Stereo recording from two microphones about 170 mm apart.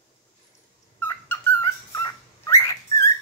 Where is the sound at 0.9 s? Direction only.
10° left (ahead or behind).